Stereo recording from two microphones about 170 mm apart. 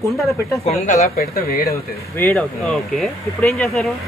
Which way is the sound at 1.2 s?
60° left (ahead or behind).